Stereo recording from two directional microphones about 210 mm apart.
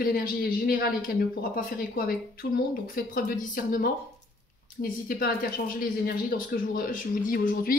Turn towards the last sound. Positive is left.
turn(degrees=40)  # may be behind; listen again after turning